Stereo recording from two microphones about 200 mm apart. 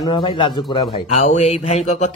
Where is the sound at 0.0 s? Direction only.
25° left (ahead or behind).